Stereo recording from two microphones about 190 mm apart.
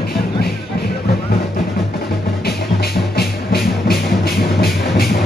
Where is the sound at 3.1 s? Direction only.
55° left (ahead or behind).